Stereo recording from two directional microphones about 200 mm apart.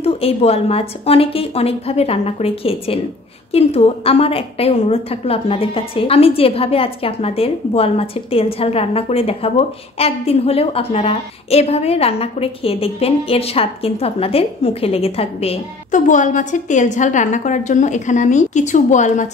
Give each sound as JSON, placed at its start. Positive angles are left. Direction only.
{"t": 0.0, "sound": "a woman's voice", "side_deg": 30}